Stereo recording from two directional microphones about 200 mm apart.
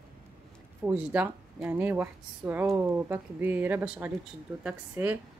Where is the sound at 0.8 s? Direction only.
10° right (ahead or behind).